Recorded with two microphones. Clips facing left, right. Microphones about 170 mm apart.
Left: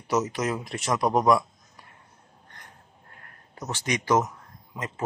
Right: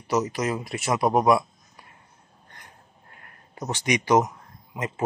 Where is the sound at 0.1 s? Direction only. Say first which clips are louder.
Right 1 dB; centre (ahead or behind).